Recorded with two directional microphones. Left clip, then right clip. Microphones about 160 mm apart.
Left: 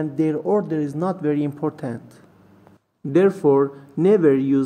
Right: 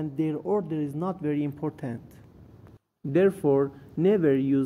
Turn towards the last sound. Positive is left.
turn(degrees=-35)  # may be behind; listen again after turning